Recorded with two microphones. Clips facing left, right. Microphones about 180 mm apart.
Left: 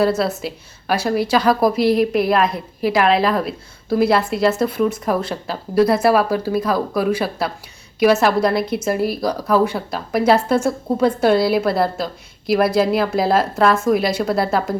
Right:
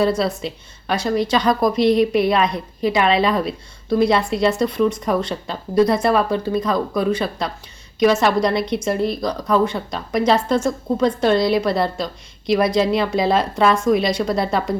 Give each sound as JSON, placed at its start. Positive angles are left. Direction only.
{"t": 0.0, "sound": "speech", "side_deg": 5}